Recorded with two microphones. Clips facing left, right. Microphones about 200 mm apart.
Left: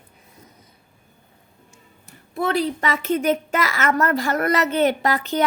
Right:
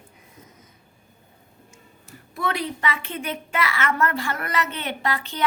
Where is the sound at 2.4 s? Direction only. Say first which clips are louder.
Left 5 dB; 35° left (ahead or behind).